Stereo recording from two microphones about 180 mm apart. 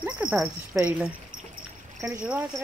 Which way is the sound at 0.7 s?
10° right (ahead or behind).